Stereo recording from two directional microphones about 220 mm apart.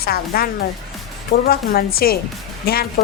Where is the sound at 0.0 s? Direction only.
45° left (ahead or behind).